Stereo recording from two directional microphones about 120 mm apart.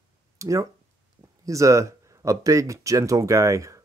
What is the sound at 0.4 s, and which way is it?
Speech, 25° right (ahead or behind).